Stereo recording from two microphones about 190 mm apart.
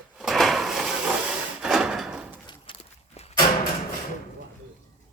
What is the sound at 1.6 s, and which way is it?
Drawer open or close, 5° right (ahead or behind).